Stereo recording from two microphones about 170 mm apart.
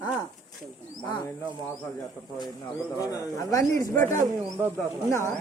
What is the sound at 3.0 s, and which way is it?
Speech, 20° left (ahead or behind).